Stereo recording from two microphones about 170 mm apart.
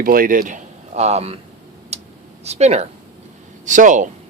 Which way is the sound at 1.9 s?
40° right (ahead or behind).